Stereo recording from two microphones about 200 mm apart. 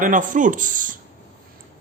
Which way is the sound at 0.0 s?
40° right (ahead or behind).